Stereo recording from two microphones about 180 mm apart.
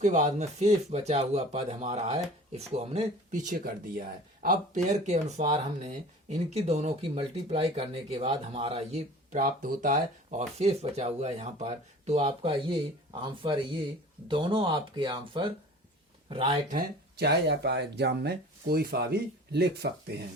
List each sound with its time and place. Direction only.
0.0 s speech: 45° right (ahead or behind)
16.6 s speech: 60° right (ahead or behind)